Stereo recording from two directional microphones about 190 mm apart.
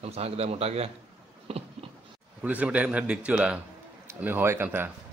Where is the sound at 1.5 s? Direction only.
30° right (ahead or behind).